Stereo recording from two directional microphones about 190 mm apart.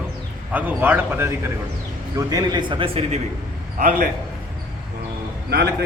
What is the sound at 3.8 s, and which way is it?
Speech, 45° right (ahead or behind).